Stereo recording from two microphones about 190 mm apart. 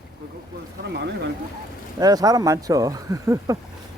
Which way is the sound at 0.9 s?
60° right (ahead or behind).